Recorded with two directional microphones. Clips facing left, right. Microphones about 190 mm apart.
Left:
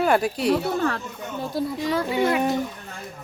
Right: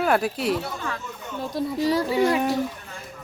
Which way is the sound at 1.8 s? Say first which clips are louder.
Right 5 dB; 40° right (ahead or behind).